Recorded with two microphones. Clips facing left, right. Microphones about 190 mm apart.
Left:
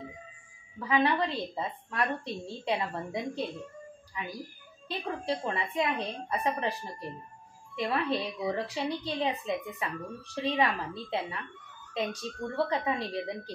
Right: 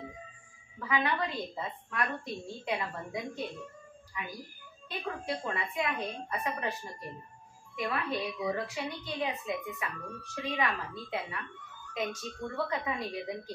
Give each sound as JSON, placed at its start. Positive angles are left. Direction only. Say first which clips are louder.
{"t": 0.7, "sound": "a woman's voice", "louder": "left 4 dB", "side_deg": 30}
{"t": 4.8, "sound": "a woman's voice", "louder": "left 3 dB", "side_deg": 30}